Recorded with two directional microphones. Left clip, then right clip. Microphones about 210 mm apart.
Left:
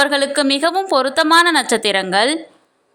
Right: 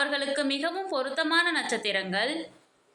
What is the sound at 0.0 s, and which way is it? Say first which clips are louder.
A woman's voice: left 12 dB; 50° left (ahead or behind).